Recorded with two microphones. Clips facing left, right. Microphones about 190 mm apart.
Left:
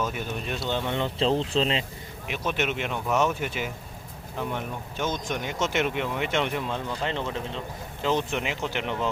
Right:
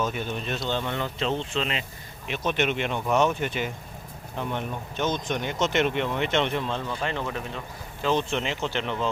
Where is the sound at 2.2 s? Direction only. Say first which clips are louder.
Right 2 dB; 10° left (ahead or behind).